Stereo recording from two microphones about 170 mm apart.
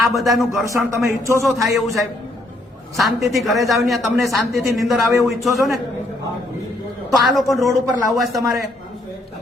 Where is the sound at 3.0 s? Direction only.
Centre (ahead or behind).